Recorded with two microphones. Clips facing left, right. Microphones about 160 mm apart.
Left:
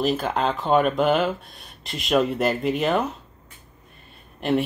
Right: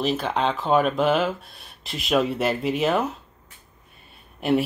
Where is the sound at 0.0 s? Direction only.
Centre (ahead or behind).